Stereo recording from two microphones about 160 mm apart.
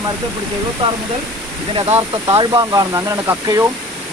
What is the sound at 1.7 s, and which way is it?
Speech, 40° right (ahead or behind).